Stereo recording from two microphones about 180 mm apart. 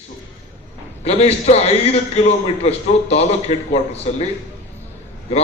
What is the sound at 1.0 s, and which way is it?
A man's voice, 35° left (ahead or behind).